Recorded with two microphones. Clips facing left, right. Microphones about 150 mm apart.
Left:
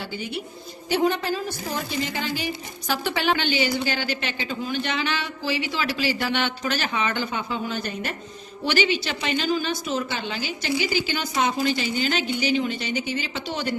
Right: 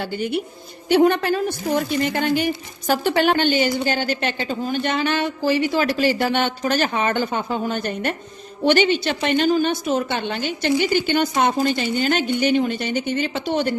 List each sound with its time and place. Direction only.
0.0 s a woman's voice: 55° right (ahead or behind)